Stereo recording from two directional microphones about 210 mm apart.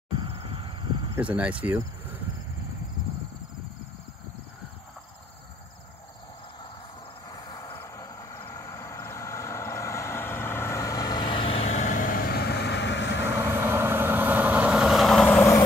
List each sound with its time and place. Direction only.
0.1 s a sound: 25° right (ahead or behind)
1.3 s speech: 5° right (ahead or behind)
7.2 s vehicle: 20° left (ahead or behind); by 13.3 s 55° left (ahead or behind)
13.4 s vehicle: 10° right (ahead or behind); by 15.6 s 10° left (ahead or behind)